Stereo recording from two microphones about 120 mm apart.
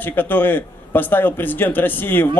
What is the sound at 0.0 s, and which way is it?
A man's voice, 15° left (ahead or behind).